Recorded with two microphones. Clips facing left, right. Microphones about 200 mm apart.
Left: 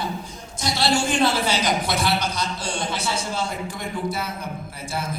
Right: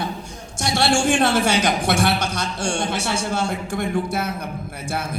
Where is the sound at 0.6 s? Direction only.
55° right (ahead or behind).